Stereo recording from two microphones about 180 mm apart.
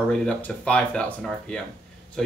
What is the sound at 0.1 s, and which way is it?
Speech, 5° left (ahead or behind).